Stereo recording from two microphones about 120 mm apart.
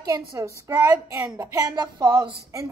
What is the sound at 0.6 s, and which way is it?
Speech, 20° right (ahead or behind).